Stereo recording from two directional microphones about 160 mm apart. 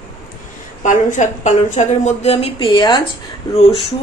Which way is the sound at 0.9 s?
50° left (ahead or behind).